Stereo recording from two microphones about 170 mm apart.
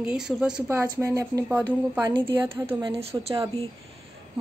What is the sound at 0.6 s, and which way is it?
A woman's voice, 15° right (ahead or behind).